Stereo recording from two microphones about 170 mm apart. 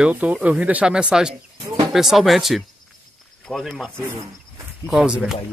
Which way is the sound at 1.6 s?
25° right (ahead or behind).